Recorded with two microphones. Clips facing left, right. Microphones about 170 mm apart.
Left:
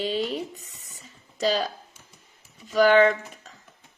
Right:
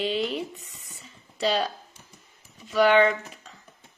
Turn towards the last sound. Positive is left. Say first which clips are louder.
# left 2 dB
turn(degrees=40)  # may be behind; listen again after turning